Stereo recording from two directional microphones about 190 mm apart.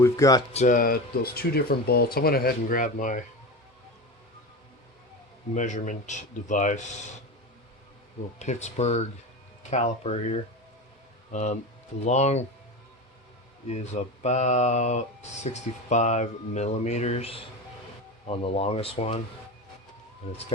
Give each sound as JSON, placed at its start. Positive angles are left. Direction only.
{"t": 0.0, "sound": "speech", "side_deg": 15}
{"t": 0.5, "sound": "speech", "side_deg": 40}
{"t": 5.5, "sound": "speech", "side_deg": 40}
{"t": 8.4, "sound": "speech", "side_deg": 35}
{"t": 13.7, "sound": "speech", "side_deg": 35}